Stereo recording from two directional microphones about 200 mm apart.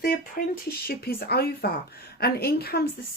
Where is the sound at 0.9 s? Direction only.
50° left (ahead or behind).